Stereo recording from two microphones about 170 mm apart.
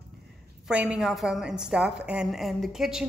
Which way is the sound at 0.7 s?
5° right (ahead or behind).